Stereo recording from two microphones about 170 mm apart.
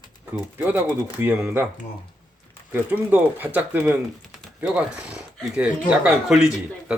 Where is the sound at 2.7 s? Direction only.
10° right (ahead or behind).